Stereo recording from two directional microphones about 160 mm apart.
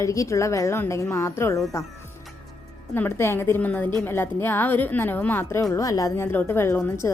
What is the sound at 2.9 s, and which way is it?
A woman's voice, 15° left (ahead or behind).